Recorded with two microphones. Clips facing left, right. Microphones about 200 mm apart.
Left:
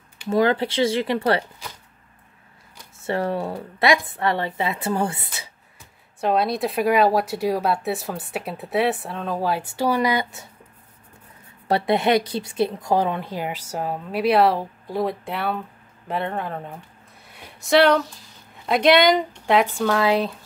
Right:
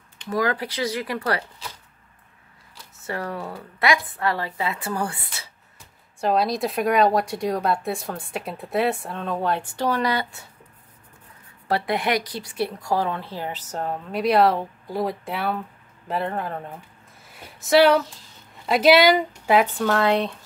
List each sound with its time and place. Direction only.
0.3 s speech: 25° left (ahead or behind)
3.0 s speech: 25° left (ahead or behind)
6.2 s speech: centre (ahead or behind); by 10.5 s 15° left (ahead or behind)
11.6 s speech: 25° left (ahead or behind); by 20.3 s centre (ahead or behind)